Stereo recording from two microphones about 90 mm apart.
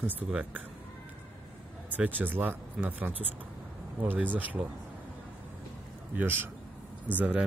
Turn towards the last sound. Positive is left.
turn(degrees=-15)  # may be behind; listen again after turning